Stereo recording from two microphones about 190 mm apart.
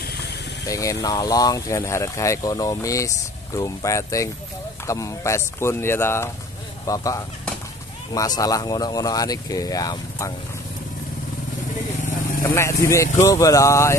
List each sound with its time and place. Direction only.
0.7 s speech: 15° left (ahead or behind)
12.4 s speech: 15° left (ahead or behind)